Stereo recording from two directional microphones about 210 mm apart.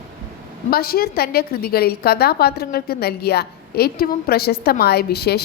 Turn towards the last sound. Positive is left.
turn(degrees=50)  # may be behind; listen again after turning